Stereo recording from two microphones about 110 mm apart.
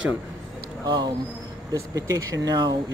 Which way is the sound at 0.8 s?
40° right (ahead or behind).